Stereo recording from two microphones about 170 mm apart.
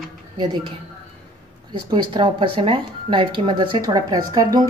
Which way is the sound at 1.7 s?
25° right (ahead or behind).